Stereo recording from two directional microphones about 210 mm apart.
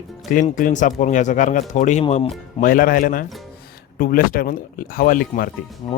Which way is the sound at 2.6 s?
40° left (ahead or behind).